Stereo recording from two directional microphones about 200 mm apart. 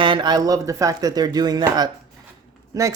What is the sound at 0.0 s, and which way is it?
Speech, 25° right (ahead or behind).